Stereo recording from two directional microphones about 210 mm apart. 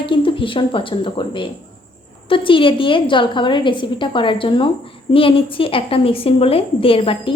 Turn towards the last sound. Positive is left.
turn(degrees=25)  # may be behind; listen again after turning